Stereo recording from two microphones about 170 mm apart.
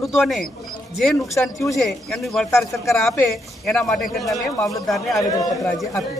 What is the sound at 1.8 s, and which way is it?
Speech, centre (ahead or behind).